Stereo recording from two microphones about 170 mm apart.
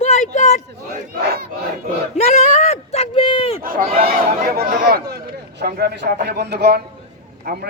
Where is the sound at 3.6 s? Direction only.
55° right (ahead or behind).